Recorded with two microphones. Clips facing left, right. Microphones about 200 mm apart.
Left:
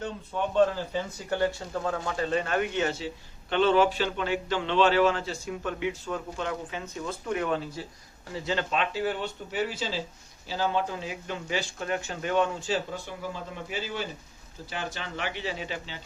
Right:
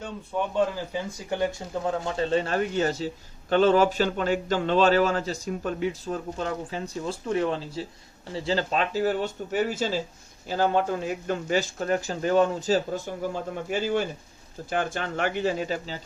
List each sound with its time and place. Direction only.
0.5 s speech: 15° right (ahead or behind)
2.0 s a man's voice: 30° right (ahead or behind)